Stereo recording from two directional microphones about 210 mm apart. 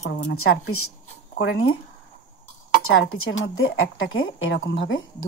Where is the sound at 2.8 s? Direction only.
80° left; by 5.0 s 60° left (ahead or behind).